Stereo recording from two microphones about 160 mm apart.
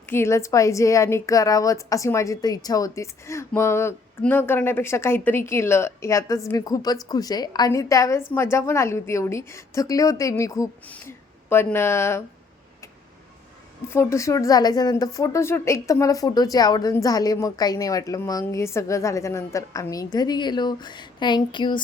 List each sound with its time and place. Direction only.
0.1 s a woman's voice: 15° left (ahead or behind)
13.8 s a woman's voice: 15° left (ahead or behind)